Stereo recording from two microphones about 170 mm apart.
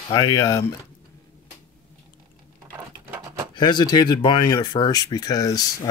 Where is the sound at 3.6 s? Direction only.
25° left (ahead or behind).